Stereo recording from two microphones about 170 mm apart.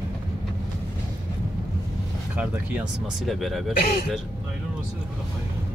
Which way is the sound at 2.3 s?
10° right (ahead or behind).